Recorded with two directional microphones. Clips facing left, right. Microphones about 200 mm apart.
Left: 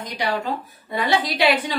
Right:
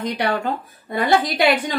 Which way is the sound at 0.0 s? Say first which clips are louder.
Right 3 dB; 55° right (ahead or behind).